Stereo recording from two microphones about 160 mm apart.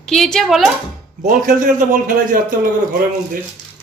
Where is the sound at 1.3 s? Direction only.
55° right (ahead or behind).